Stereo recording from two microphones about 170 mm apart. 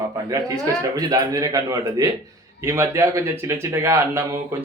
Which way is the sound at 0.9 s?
20° right (ahead or behind).